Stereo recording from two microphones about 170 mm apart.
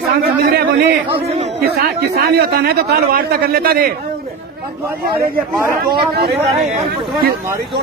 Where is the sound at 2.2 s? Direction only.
65° right (ahead or behind).